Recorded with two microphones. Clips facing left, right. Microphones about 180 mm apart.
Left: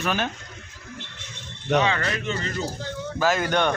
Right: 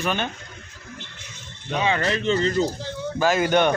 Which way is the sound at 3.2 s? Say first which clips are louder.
Right 3 dB; 5° right (ahead or behind).